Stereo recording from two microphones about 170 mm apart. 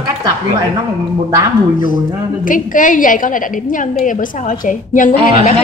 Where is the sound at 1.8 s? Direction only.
50° left (ahead or behind).